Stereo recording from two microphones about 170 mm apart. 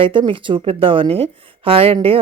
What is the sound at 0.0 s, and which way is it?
Speech, 30° right (ahead or behind).